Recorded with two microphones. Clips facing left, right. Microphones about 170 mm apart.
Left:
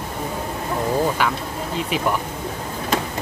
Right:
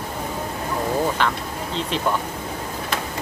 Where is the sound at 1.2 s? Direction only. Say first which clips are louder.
Left 1 dB; 10° left (ahead or behind).